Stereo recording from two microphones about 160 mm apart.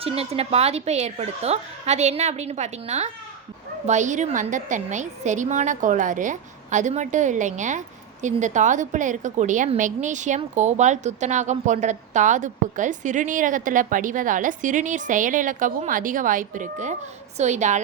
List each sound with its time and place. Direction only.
0.0 s a woman's voice: 40° right (ahead or behind)